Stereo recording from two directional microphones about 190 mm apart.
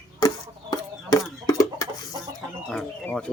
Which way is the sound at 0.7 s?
20° left (ahead or behind).